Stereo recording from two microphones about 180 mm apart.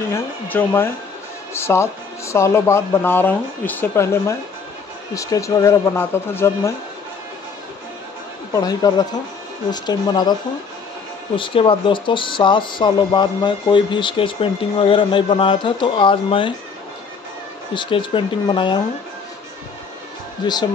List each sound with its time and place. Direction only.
0.1 s speech: 10° left (ahead or behind)
8.5 s speech: 20° left (ahead or behind)
11.3 s speech: 30° left (ahead or behind)
17.7 s speech: 25° left (ahead or behind)
20.4 s speech: 25° left (ahead or behind)